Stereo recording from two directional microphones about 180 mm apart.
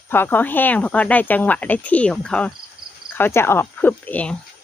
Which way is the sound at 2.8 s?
60° right (ahead or behind).